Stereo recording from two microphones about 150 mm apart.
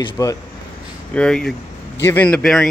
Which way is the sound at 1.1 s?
5° left (ahead or behind).